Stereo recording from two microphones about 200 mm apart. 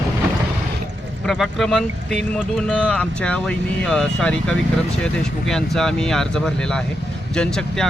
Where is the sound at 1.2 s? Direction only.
Centre (ahead or behind).